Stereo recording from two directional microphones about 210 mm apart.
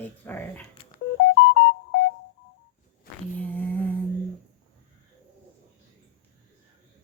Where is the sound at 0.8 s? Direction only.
25° left (ahead or behind).